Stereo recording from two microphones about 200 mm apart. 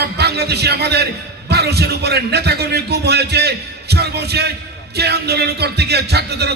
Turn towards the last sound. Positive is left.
turn(degrees=-55)  # may be behind; listen again after turning